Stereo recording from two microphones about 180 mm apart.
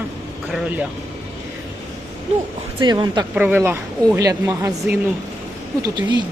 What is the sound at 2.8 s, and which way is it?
Speech, 25° right (ahead or behind).